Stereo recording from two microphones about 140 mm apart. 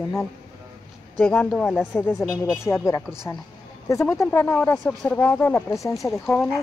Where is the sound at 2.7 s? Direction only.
20° left (ahead or behind).